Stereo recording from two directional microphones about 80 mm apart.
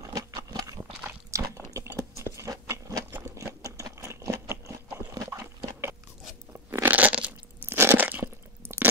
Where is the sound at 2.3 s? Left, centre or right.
Right.